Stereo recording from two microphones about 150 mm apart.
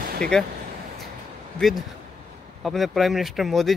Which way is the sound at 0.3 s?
5° left (ahead or behind).